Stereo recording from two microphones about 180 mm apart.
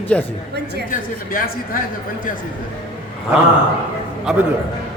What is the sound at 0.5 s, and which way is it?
Speech, 65° right (ahead or behind).